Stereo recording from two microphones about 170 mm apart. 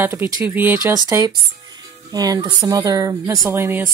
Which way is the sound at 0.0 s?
10° right (ahead or behind).